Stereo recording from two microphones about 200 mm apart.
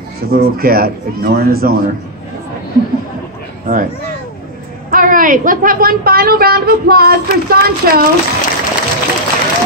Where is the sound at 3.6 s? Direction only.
45° right (ahead or behind).